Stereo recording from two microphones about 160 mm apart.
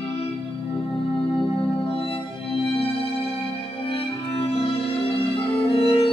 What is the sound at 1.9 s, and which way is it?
Music, 35° left (ahead or behind).